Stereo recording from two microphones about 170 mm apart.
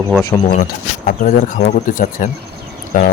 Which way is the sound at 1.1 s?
50° left (ahead or behind).